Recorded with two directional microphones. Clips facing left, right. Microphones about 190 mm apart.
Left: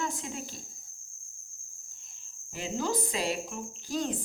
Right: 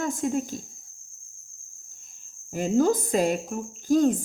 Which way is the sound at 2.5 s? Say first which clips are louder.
Right 10 dB; 45° right (ahead or behind).